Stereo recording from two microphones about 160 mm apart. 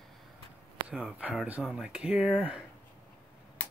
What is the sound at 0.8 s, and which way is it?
Speech, 5° right (ahead or behind).